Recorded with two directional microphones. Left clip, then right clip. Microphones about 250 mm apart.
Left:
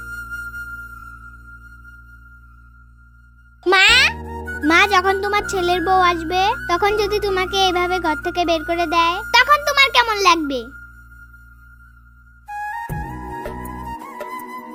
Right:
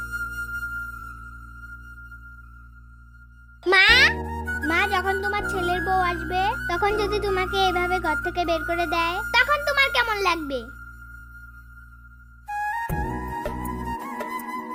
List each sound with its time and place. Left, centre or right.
0.0 s music: centre
3.6 s music for children: centre
4.7 s music: centre
5.2 s a child's voice: centre
9.3 s a sound: centre
12.5 s music: centre